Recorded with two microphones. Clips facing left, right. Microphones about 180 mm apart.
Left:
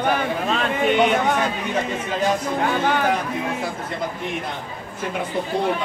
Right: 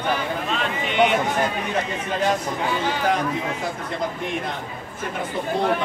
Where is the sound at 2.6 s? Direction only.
55° left (ahead or behind).